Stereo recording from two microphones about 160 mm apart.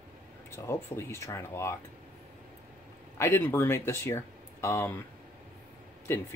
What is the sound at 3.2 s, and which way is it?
Speech, 15° left (ahead or behind).